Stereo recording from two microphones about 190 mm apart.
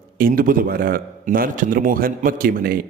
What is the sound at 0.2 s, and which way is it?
A man's voice, 45° right (ahead or behind).